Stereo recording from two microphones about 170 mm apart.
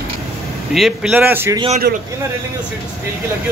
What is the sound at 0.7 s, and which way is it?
Speech, 5° right (ahead or behind).